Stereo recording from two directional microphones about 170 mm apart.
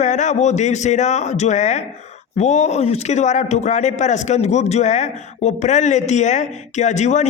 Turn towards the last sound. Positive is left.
turn(degrees=45)  # may be behind; listen again after turning